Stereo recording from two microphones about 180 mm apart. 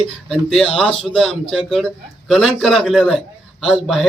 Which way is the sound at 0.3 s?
Centre (ahead or behind).